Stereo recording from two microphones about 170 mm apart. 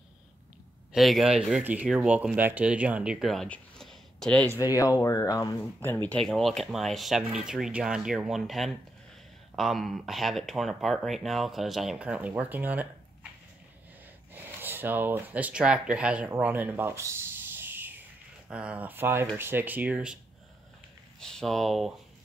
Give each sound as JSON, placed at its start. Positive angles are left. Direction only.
{"t": 0.9, "sound": "speech", "side_deg": 0}
{"t": 4.6, "sound": "speech", "side_deg": 20}
{"t": 14.3, "sound": "speech", "side_deg": -10}
{"t": 21.2, "sound": "speech", "side_deg": 5}